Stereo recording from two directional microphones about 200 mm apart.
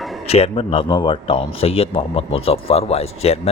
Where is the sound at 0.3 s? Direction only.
30° left (ahead or behind).